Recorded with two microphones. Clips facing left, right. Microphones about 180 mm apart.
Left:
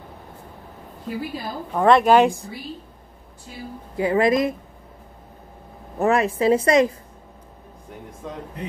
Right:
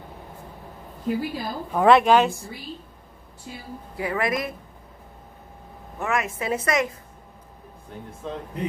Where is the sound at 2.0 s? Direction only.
15° left (ahead or behind).